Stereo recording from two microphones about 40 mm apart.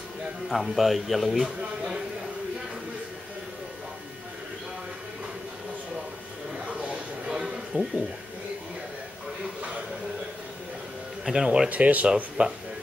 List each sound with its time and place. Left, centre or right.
0.5 s a man's voice: centre
6.8 s a sound: right
7.7 s speech: right
9.6 s a sound: right
11.2 s speech: centre
11.7 s speech: right